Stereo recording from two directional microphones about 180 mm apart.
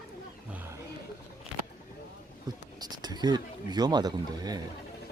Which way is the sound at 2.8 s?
20° right (ahead or behind).